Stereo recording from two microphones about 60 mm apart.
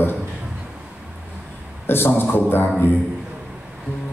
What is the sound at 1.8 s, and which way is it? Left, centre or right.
A man's voice, left.